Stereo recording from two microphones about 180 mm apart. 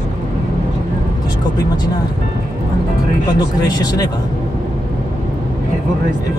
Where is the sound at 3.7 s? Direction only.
20° left (ahead or behind).